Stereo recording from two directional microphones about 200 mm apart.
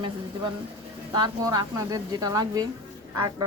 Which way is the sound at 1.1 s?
20° right (ahead or behind).